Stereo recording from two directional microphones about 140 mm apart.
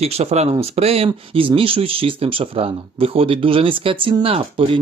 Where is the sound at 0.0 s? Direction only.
45° right (ahead or behind).